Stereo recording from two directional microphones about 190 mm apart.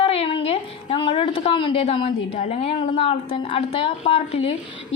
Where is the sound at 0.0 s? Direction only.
30° left (ahead or behind).